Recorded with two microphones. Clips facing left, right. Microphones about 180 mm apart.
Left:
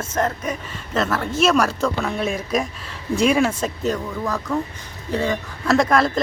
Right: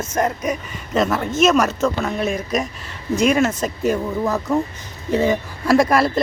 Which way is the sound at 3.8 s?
20° right (ahead or behind).